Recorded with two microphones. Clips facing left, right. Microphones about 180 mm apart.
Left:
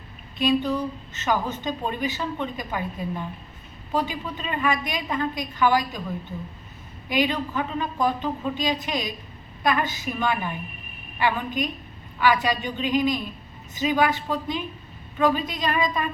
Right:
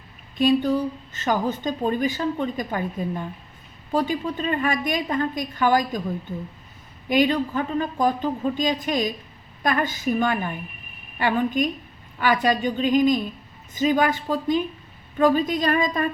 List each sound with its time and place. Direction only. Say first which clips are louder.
0.3 s a woman's voice: right 3 dB; 45° right (ahead or behind)
3.9 s a woman's voice: right 4 dB; 45° right (ahead or behind)
7.1 s a woman's voice: right 4 dB; 45° right (ahead or behind)